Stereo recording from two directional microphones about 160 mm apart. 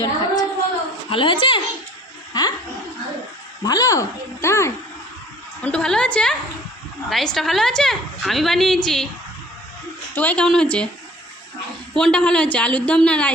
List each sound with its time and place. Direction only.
0.0 s a sound: 25° left (ahead or behind)
2.3 s chuckle: 25° left (ahead or behind)
3.6 s speech: 25° left (ahead or behind)
5.6 s a woman's voice: 5° left (ahead or behind)
10.2 s a woman's voice: 10° left (ahead or behind)
11.9 s a woman's voice: 5° left (ahead or behind)